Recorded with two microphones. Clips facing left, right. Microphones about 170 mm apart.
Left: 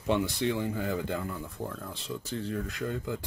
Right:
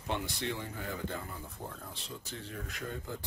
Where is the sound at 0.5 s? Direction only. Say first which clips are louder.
Left 9 dB; 90° left.